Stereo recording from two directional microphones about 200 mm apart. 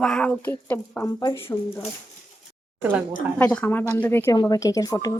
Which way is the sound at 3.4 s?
5° left (ahead or behind).